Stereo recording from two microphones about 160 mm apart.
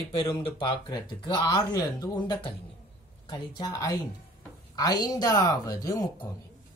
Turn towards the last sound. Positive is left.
turn(degrees=20)  # may be behind; listen again after turning